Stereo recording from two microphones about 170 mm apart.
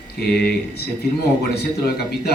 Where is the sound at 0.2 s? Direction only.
70° left (ahead or behind).